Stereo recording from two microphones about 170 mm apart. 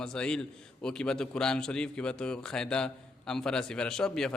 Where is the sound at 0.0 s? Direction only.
5° left (ahead or behind).